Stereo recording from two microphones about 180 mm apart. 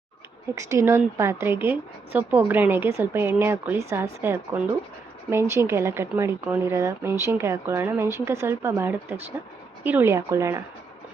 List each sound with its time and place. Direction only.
0.5 s speech: 15° right (ahead or behind)